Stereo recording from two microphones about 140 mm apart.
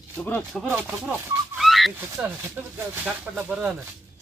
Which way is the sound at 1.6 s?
Centre (ahead or behind).